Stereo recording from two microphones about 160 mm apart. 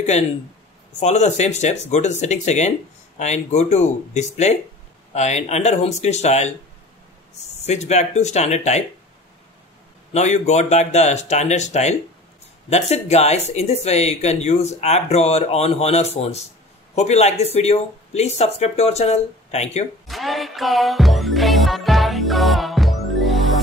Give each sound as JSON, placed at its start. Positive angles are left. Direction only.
{"t": 0.9, "sound": "speech", "side_deg": 45}
{"t": 10.1, "sound": "speech", "side_deg": 45}
{"t": 20.1, "sound": "music", "side_deg": 0}